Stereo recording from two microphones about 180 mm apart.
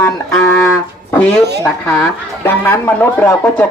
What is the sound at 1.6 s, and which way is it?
Speech, 5° left (ahead or behind).